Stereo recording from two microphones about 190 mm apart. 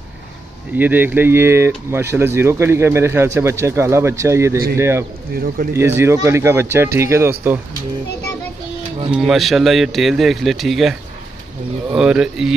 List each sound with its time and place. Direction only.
0.7 s speech: 10° right (ahead or behind)
5.3 s speech: 50° right (ahead or behind)
5.8 s speech: 15° right (ahead or behind)
9.1 s a man's voice: centre (ahead or behind)